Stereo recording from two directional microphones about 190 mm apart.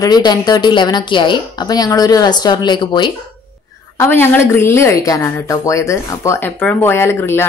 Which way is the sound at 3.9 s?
10° left (ahead or behind).